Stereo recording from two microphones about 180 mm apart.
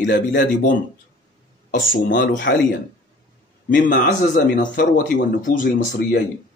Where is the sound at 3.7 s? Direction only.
50° left (ahead or behind).